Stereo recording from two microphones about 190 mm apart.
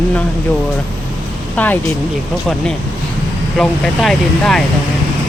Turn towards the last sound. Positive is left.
turn(degrees=0)  # may be behind; listen again after turning